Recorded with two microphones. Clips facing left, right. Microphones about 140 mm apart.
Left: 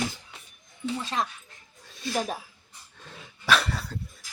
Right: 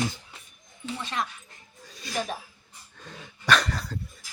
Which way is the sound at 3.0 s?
Centre (ahead or behind).